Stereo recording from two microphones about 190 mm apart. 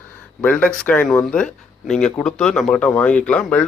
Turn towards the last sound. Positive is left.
turn(degrees=5)  # may be behind; listen again after turning